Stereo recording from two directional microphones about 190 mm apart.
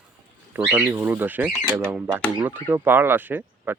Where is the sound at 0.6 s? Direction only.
10° right (ahead or behind).